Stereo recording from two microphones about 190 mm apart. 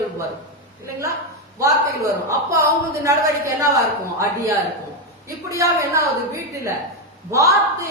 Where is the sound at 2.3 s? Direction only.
15° right (ahead or behind).